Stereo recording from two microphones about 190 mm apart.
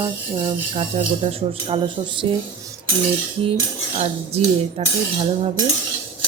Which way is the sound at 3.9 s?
35° right (ahead or behind).